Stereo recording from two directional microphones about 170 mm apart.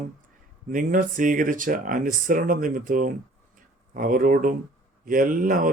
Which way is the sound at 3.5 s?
55° right (ahead or behind).